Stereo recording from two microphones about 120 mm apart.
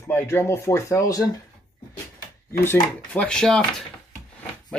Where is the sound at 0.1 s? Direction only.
20° left (ahead or behind).